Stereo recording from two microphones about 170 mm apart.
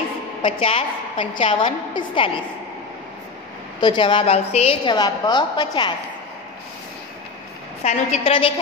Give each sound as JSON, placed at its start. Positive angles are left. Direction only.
{"t": 0.4, "sound": "a woman's voice", "side_deg": 30}
{"t": 3.8, "sound": "a woman's voice", "side_deg": 25}
{"t": 4.9, "sound": "a woman's voice", "side_deg": 25}
{"t": 7.8, "sound": "a woman's voice", "side_deg": 35}